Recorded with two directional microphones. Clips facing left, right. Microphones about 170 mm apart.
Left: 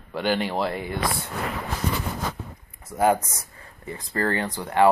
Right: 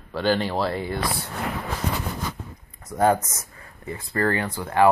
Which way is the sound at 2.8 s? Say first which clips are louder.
Right 1 dB; 10° left (ahead or behind).